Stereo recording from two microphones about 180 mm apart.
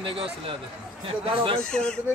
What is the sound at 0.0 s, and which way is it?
Speech, 30° right (ahead or behind).